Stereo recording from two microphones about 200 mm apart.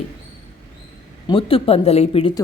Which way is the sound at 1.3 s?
25° left (ahead or behind).